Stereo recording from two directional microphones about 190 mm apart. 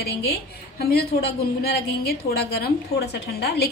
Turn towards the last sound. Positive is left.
turn(degrees=60)  # may be behind; listen again after turning